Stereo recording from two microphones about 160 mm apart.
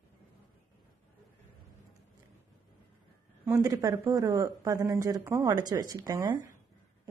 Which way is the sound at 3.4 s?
15° right (ahead or behind).